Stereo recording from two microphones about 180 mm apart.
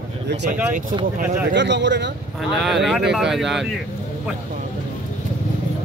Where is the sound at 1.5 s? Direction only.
75° right (ahead or behind).